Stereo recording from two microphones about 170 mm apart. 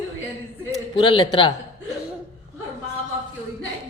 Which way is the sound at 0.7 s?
30° left (ahead or behind).